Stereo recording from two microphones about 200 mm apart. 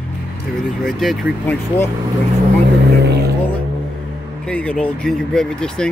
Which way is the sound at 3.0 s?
55° right (ahead or behind).